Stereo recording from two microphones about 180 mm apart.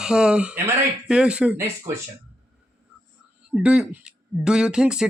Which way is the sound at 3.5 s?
5° right (ahead or behind).